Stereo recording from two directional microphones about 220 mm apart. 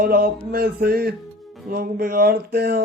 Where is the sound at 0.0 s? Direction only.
45° right (ahead or behind).